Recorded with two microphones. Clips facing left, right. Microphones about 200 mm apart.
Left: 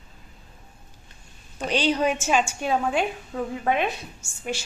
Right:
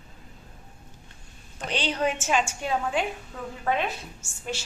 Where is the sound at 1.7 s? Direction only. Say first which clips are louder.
Left 4 dB; 15° left (ahead or behind).